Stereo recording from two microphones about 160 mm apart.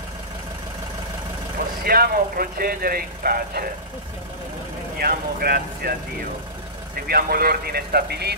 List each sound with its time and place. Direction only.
1.9 s speech: 65° right (ahead or behind)
4.9 s speech: 70° right (ahead or behind)
7.1 s speech: 70° right (ahead or behind); by 8.4 s 90° right